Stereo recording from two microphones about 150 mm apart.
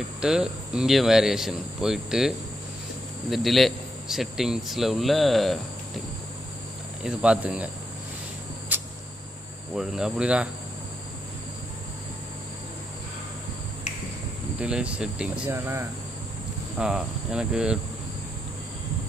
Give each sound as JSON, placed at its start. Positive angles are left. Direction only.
{"t": 0.2, "sound": "a man's voice", "side_deg": -5}
{"t": 7.0, "sound": "speech", "side_deg": -5}
{"t": 8.7, "sound": "a sound", "side_deg": -10}
{"t": 9.8, "sound": "speech", "side_deg": -5}
{"t": 14.6, "sound": "speech", "side_deg": -10}
{"t": 15.5, "sound": "cricket", "side_deg": -20}
{"t": 16.7, "sound": "a man's voice", "side_deg": -5}